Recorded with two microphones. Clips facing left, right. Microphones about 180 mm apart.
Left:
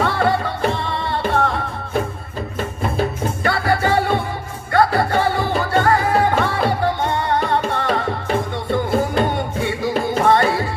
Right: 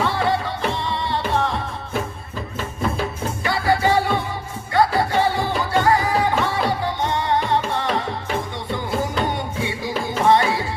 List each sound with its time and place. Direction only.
0.0 s music: 55° left (ahead or behind)
3.0 s music: 55° left (ahead or behind)